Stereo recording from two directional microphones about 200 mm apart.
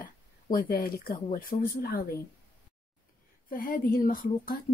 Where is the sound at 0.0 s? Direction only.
45° left (ahead or behind).